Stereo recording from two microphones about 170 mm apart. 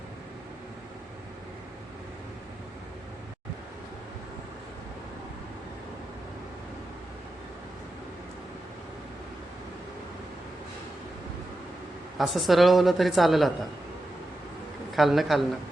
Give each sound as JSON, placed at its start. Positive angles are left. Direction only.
{"t": 12.1, "sound": "a woman's voice", "side_deg": 0}
{"t": 14.9, "sound": "a woman's voice", "side_deg": 0}